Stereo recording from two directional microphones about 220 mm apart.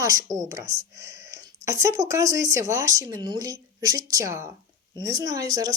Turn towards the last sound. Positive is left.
turn(degrees=-15)  # may be behind; listen again after turning